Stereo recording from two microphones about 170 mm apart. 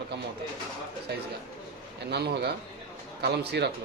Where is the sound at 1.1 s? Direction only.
75° right (ahead or behind).